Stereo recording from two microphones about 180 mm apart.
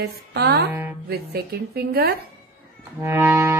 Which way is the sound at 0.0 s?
70° right (ahead or behind).